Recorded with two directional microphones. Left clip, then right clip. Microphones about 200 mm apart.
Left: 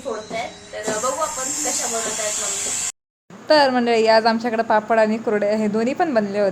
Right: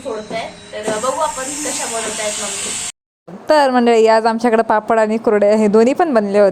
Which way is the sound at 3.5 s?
40° right (ahead or behind).